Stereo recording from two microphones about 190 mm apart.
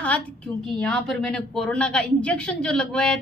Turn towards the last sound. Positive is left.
turn(degrees=5)  # may be behind; listen again after turning